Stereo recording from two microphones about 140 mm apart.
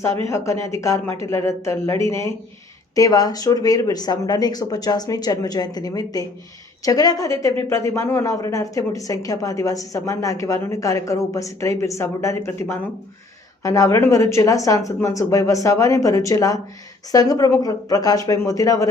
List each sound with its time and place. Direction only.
0.3 s speech: 20° left (ahead or behind)